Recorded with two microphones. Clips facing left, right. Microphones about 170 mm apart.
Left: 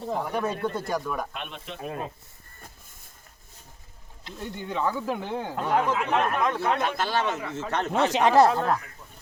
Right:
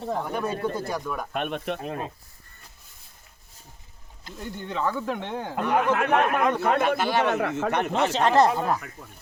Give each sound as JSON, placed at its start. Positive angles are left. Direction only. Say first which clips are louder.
{"t": 0.1, "sound": "speech", "louder": "even", "side_deg": 5}
{"t": 1.3, "sound": "speech", "louder": "right 10 dB", "side_deg": -55}
{"t": 1.8, "sound": "speech", "louder": "right 1 dB", "side_deg": -20}
{"t": 4.2, "sound": "speech", "louder": "even", "side_deg": 0}
{"t": 5.8, "sound": "speech", "louder": "right 3 dB", "side_deg": -65}
{"t": 6.4, "sound": "a man's voice", "louder": "right 3 dB", "side_deg": 0}
{"t": 7.3, "sound": "speech", "louder": "right 6 dB", "side_deg": -60}
{"t": 7.7, "sound": "a man's voice", "louder": "left 4 dB", "side_deg": -15}
{"t": 8.0, "sound": "speech", "louder": "left 2 dB", "side_deg": 15}
{"t": 8.5, "sound": "speech", "louder": "even", "side_deg": -5}